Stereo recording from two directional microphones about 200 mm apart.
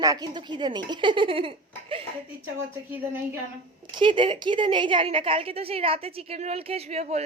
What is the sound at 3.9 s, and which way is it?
A woman's voice, 25° right (ahead or behind).